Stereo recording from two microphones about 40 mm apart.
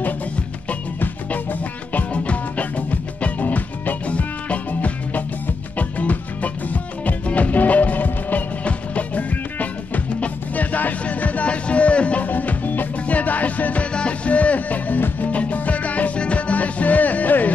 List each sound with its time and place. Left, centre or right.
1.0 s music: left
2.1 s music: left
12.3 s music: left
13.9 s music: left